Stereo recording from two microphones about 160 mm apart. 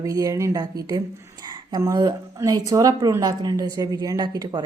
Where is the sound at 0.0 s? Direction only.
20° right (ahead or behind).